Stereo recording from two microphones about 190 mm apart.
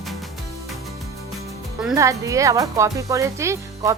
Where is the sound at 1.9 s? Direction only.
15° right (ahead or behind).